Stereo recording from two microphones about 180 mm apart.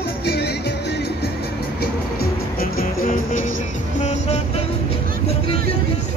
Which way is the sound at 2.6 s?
50° left (ahead or behind).